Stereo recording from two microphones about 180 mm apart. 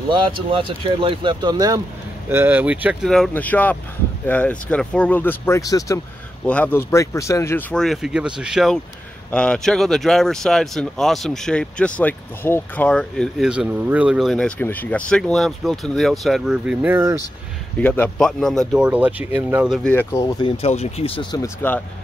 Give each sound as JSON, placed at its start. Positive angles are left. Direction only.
{"t": 0.1, "sound": "speech", "side_deg": -30}
{"t": 2.2, "sound": "speech", "side_deg": -10}
{"t": 6.4, "sound": "speech", "side_deg": 10}
{"t": 7.7, "sound": "speech", "side_deg": 0}
{"t": 17.7, "sound": "speech", "side_deg": 10}
{"t": 19.9, "sound": "speech", "side_deg": 15}
{"t": 20.4, "sound": "speech", "side_deg": 35}